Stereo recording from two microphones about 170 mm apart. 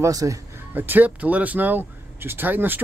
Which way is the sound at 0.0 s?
20° right (ahead or behind).